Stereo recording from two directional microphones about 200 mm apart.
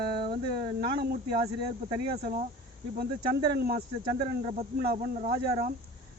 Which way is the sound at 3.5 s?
50° right (ahead or behind).